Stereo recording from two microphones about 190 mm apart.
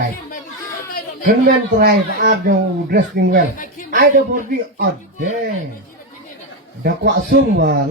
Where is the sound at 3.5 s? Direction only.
45° left (ahead or behind).